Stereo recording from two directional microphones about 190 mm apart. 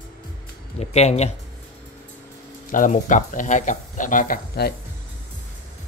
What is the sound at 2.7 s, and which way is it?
Speech, 45° left (ahead or behind).